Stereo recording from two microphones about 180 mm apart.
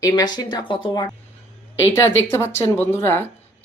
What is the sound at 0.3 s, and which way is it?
Speech, 25° left (ahead or behind).